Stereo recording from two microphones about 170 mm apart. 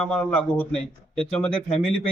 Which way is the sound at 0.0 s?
5° left (ahead or behind).